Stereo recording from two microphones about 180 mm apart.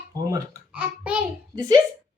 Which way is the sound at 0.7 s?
5° right (ahead or behind).